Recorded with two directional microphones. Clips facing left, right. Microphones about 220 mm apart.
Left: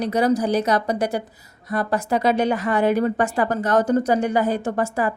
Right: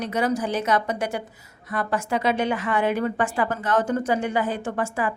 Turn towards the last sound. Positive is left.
turn(degrees=40)  # may be behind; listen again after turning